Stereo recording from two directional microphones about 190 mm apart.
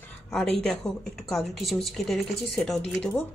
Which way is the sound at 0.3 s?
5° left (ahead or behind).